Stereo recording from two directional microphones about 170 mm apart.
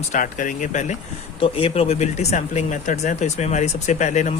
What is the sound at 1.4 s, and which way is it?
Speech, 35° left (ahead or behind).